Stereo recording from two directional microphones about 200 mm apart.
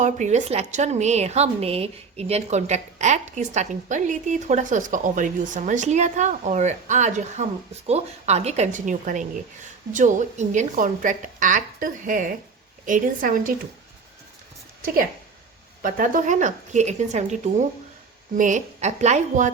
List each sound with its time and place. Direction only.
0.0 s a woman's voice: 35° right (ahead or behind)
15.8 s a woman's voice: 40° right (ahead or behind)